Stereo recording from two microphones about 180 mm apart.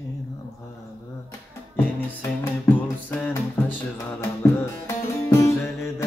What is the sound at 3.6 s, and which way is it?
Music, 15° left (ahead or behind).